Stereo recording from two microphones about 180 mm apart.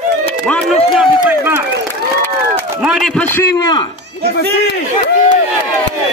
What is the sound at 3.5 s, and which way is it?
Speech, 25° left (ahead or behind).